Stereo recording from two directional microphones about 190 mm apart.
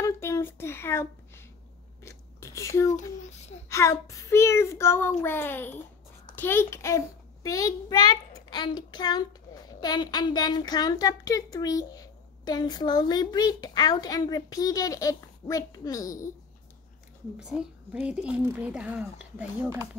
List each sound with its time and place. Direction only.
0.0 s a sound: 15° left (ahead or behind)
2.0 s chewing: 15° left (ahead or behind)
2.9 s a child's voice: 35° left (ahead or behind)
3.6 s a child's voice: 15° left (ahead or behind)
17.4 s a woman's voice: 5° right (ahead or behind)